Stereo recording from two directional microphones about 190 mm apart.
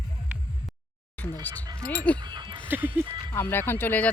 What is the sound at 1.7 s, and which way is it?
Speech, 5° left (ahead or behind).